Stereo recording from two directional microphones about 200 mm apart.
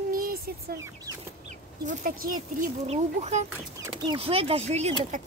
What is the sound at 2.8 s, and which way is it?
Speech, 30° right (ahead or behind).